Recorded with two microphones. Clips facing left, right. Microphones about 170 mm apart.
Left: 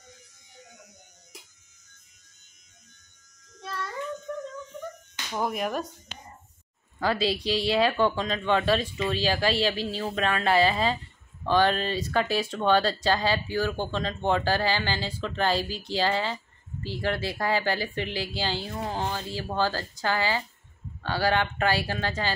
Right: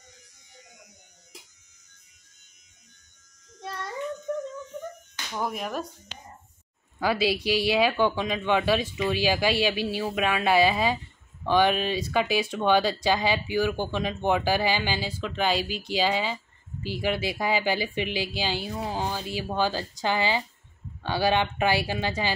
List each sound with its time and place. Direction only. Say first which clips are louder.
5.3 s speech: left 2 dB; centre (ahead or behind)
7.0 s speech: right 1 dB; 10° right (ahead or behind)